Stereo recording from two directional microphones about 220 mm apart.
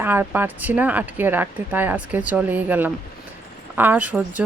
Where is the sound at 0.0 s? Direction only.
10° right (ahead or behind).